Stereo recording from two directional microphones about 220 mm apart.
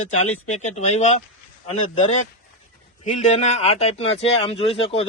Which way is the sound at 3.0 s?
30° left (ahead or behind).